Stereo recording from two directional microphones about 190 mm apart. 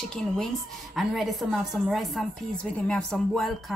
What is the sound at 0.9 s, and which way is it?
A woman's voice, centre (ahead or behind).